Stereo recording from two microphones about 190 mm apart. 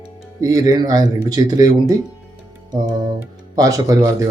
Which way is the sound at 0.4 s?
20° right (ahead or behind).